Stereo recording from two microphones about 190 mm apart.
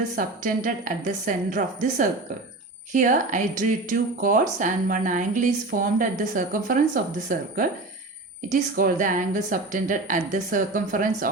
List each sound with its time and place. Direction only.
0.2 s speech: 45° right (ahead or behind)